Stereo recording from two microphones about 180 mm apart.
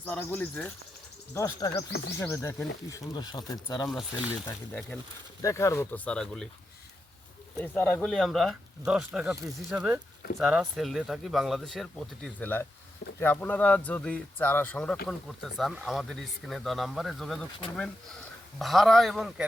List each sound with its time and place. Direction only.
0.0 s speech: 10° left (ahead or behind)
3.8 s speech: 5° right (ahead or behind)
4.7 s speech: 10° left (ahead or behind)
7.6 s speech: 10° left (ahead or behind)